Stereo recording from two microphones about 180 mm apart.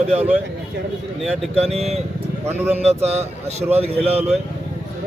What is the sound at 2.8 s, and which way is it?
Speech, 35° right (ahead or behind).